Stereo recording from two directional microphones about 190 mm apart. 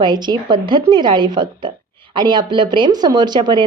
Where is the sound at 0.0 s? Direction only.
25° right (ahead or behind).